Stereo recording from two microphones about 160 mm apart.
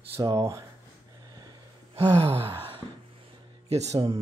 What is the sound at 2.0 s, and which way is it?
Gasp, 35° right (ahead or behind).